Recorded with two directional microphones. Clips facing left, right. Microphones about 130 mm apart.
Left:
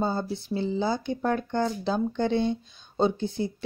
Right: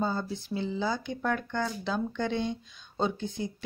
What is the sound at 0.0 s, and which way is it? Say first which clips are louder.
Speech: left 3 dB; 30° left (ahead or behind).